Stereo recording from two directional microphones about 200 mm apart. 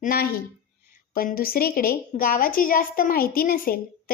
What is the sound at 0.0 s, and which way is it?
A woman's voice, 45° left (ahead or behind).